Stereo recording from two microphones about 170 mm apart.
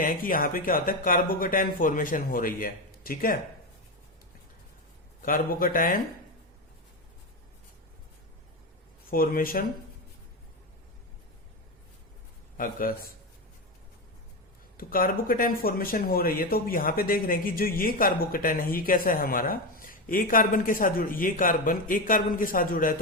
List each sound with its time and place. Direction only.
0.0 s speech: 55° left (ahead or behind)
5.2 s speech: 55° left (ahead or behind)
9.0 s speech: 55° left (ahead or behind)
12.5 s speech: 55° left (ahead or behind)
14.8 s speech: 55° left (ahead or behind)